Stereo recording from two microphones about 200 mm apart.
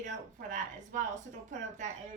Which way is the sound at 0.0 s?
40° right (ahead or behind).